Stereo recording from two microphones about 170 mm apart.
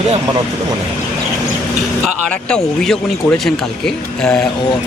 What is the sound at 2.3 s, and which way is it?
Speech, 5° left (ahead or behind).